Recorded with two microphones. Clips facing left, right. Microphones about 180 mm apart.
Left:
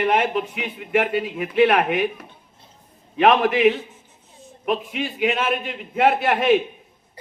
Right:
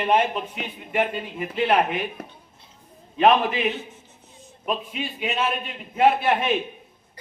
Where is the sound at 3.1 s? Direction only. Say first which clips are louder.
Left 2 dB; 75° left (ahead or behind).